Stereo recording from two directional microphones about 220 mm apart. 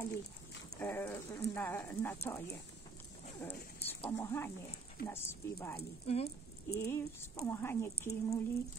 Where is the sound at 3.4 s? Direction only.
10° left (ahead or behind).